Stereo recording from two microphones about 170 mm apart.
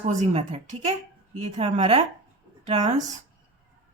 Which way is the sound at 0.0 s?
45° right (ahead or behind).